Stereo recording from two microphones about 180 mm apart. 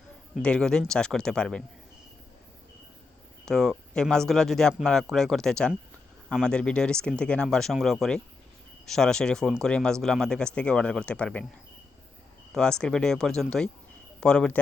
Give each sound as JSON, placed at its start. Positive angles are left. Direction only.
{"t": 0.4, "sound": "speech", "side_deg": 5}
{"t": 3.4, "sound": "speech", "side_deg": 5}
{"t": 12.5, "sound": "speech", "side_deg": 5}